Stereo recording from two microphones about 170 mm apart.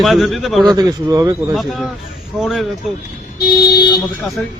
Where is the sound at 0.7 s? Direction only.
20° right (ahead or behind).